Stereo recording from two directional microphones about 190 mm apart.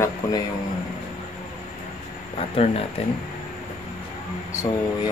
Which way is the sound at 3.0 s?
30° left (ahead or behind).